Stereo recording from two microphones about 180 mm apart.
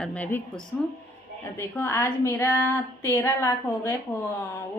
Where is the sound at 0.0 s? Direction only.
10° left (ahead or behind).